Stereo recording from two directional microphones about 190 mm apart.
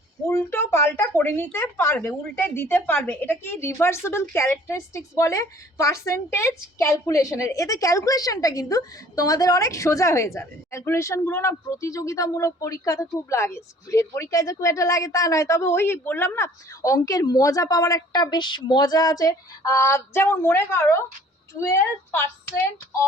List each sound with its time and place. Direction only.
0.3 s speech: 15° left (ahead or behind)